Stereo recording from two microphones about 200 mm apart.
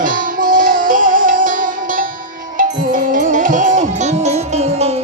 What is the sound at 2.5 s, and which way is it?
Music, 45° right (ahead or behind).